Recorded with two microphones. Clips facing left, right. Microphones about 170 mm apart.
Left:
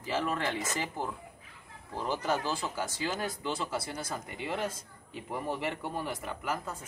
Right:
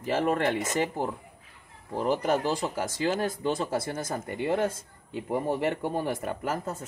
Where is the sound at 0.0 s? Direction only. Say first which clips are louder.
Right 6 dB; 50° right (ahead or behind).